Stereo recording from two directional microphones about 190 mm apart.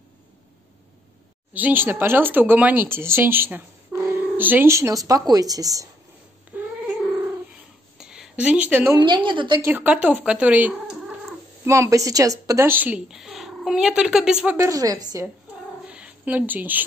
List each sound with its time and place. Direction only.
1.5 s speech: 10° right (ahead or behind)
6.5 s cat: 10° right (ahead or behind)
8.0 s a sound: 5° right (ahead or behind)
8.9 s speech: 25° right (ahead or behind)
9.6 s speech: 10° right (ahead or behind)
15.9 s a sound: 5° right (ahead or behind)